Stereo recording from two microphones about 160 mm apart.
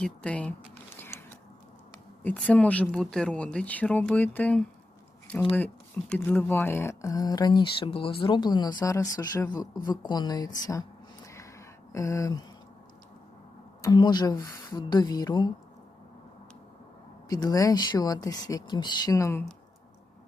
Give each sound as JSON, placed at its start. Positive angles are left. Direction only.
{"t": 0.0, "sound": "speech", "side_deg": 5}
{"t": 0.9, "sound": "a sound", "side_deg": 15}
{"t": 2.2, "sound": "speech", "side_deg": 10}
{"t": 11.9, "sound": "speech", "side_deg": 20}
{"t": 13.8, "sound": "speech", "side_deg": 25}
{"t": 17.2, "sound": "speech", "side_deg": 25}